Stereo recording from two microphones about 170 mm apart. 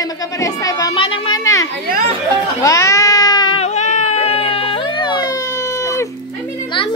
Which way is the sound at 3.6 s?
45° left (ahead or behind).